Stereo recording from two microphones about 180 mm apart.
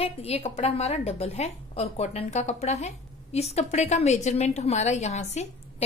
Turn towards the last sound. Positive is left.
turn(degrees=35)  # may be behind; listen again after turning